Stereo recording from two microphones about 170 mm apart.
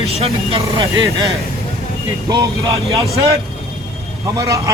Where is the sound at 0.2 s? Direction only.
35° right (ahead or behind).